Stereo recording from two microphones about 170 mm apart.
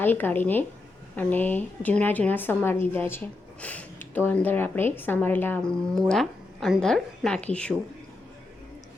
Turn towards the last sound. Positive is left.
turn(degrees=5)  # may be behind; listen again after turning